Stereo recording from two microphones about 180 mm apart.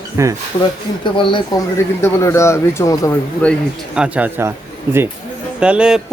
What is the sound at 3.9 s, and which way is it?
Speech, 5° right (ahead or behind).